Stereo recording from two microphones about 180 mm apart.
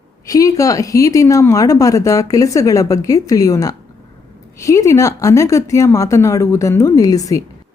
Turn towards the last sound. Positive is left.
turn(degrees=20)  # may be behind; listen again after turning